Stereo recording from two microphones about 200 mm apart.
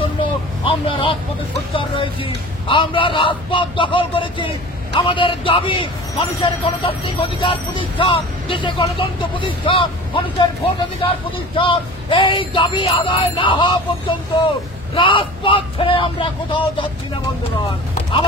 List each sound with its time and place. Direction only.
0.0 s vehicle: 25° left (ahead or behind)
1.7 s speech: 25° left (ahead or behind)